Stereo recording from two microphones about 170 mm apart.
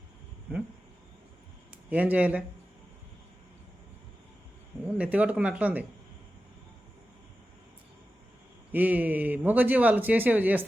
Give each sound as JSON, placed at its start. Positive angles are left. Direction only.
{"t": 1.9, "sound": "speech", "side_deg": -10}
{"t": 4.9, "sound": "speech", "side_deg": -10}
{"t": 8.7, "sound": "speech", "side_deg": -10}